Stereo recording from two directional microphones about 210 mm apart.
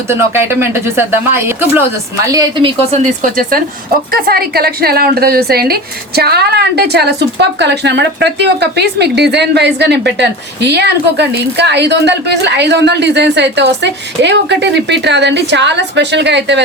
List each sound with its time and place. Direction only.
0.1 s a woman's voice: 10° right (ahead or behind); by 16.6 s 55° right (ahead or behind)